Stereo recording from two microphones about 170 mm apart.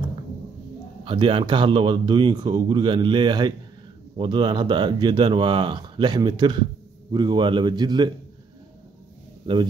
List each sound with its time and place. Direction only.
1.0 s speech: 30° right (ahead or behind)